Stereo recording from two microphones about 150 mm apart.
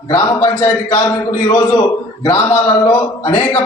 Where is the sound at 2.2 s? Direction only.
25° left (ahead or behind).